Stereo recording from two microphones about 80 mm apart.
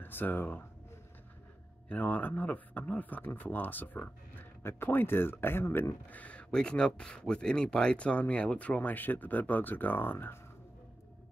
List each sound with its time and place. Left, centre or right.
0.0 s speech: left
1.9 s speech: left